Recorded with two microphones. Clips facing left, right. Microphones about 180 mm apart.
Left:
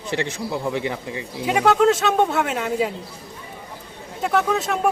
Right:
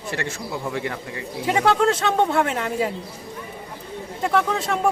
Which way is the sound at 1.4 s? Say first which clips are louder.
Left 2 dB; 5° left (ahead or behind).